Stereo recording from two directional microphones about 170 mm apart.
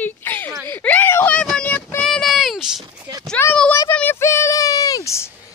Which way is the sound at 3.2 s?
10° left (ahead or behind).